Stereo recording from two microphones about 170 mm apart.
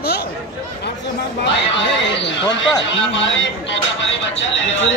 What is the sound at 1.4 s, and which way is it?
Speech, 90° left.